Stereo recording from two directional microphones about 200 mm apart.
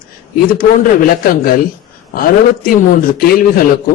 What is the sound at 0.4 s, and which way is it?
A man's voice, 45° left (ahead or behind).